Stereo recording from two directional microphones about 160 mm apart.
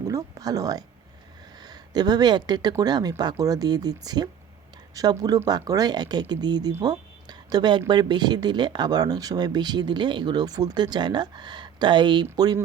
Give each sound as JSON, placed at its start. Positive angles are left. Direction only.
{"t": 0.1, "sound": "speech", "side_deg": -20}